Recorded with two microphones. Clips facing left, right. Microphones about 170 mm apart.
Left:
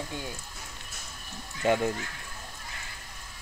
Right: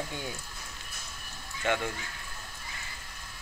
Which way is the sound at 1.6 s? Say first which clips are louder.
Left 5 dB; 35° left (ahead or behind).